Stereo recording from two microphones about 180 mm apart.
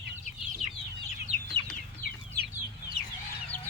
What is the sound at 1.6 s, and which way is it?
Chicken, 25° right (ahead or behind).